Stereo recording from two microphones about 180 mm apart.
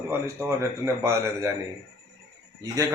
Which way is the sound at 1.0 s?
15° right (ahead or behind).